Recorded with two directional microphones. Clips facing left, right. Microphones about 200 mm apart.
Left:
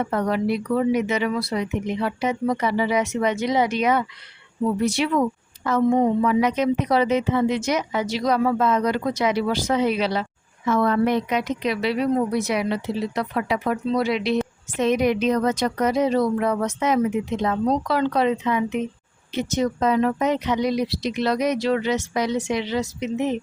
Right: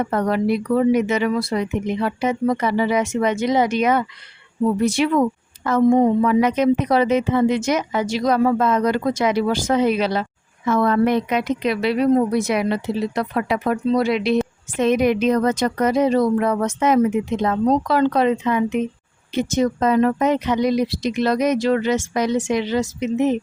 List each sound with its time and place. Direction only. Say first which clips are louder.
0.1 s a woman's voice: right 3 dB; 50° right (ahead or behind)